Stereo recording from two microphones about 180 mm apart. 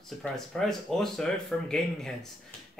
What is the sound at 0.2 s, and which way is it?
Speech, centre (ahead or behind).